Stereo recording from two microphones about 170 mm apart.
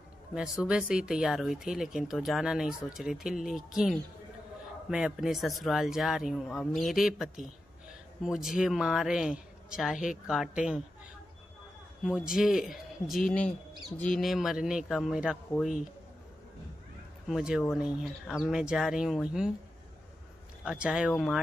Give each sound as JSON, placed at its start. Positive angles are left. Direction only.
{"t": 0.3, "sound": "speech", "side_deg": -5}
{"t": 12.0, "sound": "speech", "side_deg": -5}
{"t": 17.3, "sound": "speech", "side_deg": -5}
{"t": 20.6, "sound": "speech", "side_deg": -5}